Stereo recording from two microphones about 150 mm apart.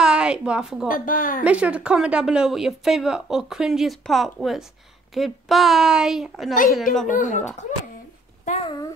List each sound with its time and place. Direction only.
0.0 s a woman's voice: 5° right (ahead or behind)
0.8 s speech: 65° left (ahead or behind)
1.4 s speech: 10° right (ahead or behind)
7.1 s speech: 55° left (ahead or behind)